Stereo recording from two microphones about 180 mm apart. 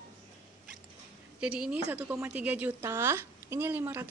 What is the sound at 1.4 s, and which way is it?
A woman's voice, 5° right (ahead or behind).